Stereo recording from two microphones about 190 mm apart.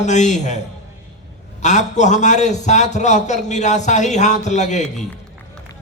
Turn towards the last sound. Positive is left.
turn(degrees=40)  # may be behind; listen again after turning